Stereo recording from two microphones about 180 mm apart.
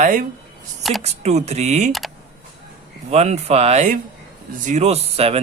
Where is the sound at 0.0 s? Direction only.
50° right (ahead or behind).